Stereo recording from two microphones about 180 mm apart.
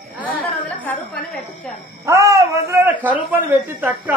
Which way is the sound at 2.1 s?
15° right (ahead or behind).